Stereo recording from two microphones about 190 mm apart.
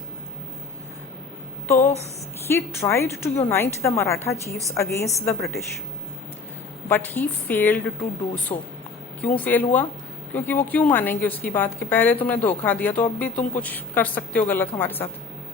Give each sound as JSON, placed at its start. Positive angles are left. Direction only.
{"t": 1.6, "sound": "a sound", "side_deg": 10}
{"t": 2.5, "sound": "a woman's voice", "side_deg": 15}
{"t": 6.8, "sound": "a woman's voice", "side_deg": 10}
{"t": 8.5, "sound": "speech", "side_deg": 20}
{"t": 9.2, "sound": "a woman's voice", "side_deg": 10}